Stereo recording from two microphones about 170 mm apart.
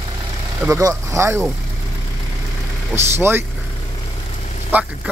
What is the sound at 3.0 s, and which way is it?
Speech, 15° right (ahead or behind).